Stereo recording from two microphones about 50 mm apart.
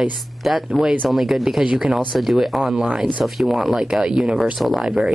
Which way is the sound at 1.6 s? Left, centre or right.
Right.